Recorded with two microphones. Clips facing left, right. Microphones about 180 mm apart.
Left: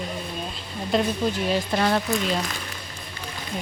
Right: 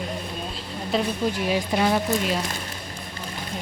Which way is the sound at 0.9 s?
10° right (ahead or behind).